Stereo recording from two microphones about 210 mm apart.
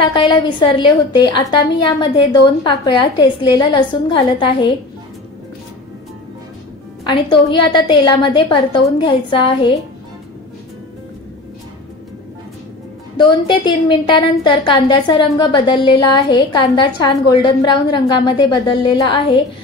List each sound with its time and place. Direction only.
0.1 s a woman's voice: 20° left (ahead or behind)
7.1 s a woman's voice: 20° left (ahead or behind)
13.2 s a woman's voice: 20° left (ahead or behind)